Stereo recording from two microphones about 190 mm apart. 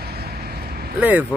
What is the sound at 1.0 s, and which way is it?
Speech, 10° right (ahead or behind).